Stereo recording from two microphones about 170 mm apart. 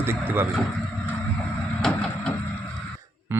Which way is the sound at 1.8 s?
5° left (ahead or behind).